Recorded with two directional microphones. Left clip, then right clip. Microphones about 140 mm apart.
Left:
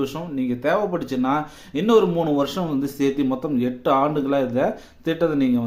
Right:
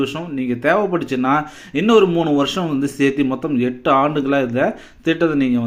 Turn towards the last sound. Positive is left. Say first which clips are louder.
# right 3 dB
turn(degrees=-10)  # may be behind; listen again after turning